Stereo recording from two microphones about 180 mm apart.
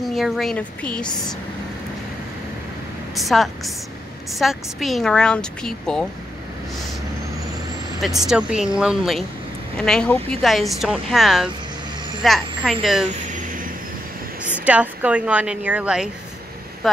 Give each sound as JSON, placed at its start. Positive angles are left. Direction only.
{"t": 0.0, "sound": "a woman's voice", "side_deg": 0}
{"t": 3.2, "sound": "a woman's voice", "side_deg": 0}
{"t": 8.3, "sound": "a woman's voice", "side_deg": -5}
{"t": 14.6, "sound": "a woman's voice", "side_deg": -10}